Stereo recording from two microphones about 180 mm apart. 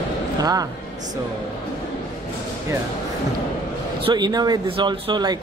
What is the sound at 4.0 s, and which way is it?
Speech, 25° right (ahead or behind).